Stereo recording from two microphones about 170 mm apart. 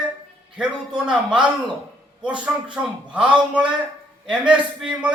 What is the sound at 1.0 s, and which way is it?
A man's voice, 5° right (ahead or behind).